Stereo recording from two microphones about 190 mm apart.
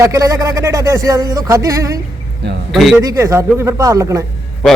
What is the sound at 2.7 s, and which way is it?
Speech, centre (ahead or behind).